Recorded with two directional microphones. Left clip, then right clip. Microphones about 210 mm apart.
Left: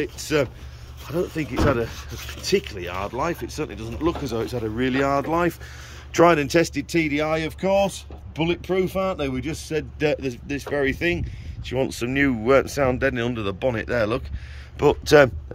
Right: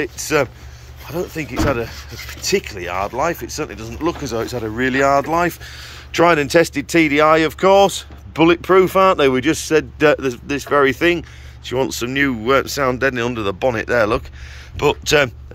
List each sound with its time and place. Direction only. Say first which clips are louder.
0.0 s speech: right 5 dB; 5° left (ahead or behind)
8.9 s speech: right 12 dB; 35° right (ahead or behind)
9.4 s speech: right 11 dB; centre (ahead or behind)
14.8 s speech: even; 20° left (ahead or behind)